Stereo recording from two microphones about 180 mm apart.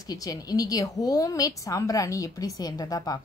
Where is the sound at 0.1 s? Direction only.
20° left (ahead or behind).